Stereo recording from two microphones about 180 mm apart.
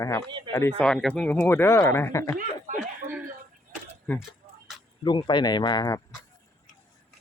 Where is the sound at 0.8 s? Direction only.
5° left (ahead or behind).